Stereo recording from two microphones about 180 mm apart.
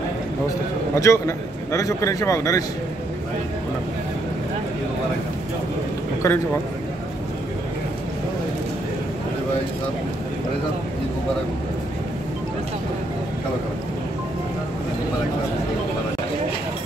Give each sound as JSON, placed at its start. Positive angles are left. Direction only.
{"t": 0.9, "sound": "a man's voice", "side_deg": 15}
{"t": 6.2, "sound": "a man's voice", "side_deg": 15}